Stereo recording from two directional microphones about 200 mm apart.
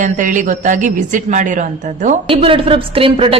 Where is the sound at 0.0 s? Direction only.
40° right (ahead or behind).